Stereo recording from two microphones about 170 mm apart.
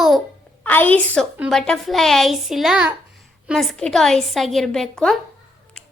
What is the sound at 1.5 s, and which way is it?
A child's voice, 5° left (ahead or behind).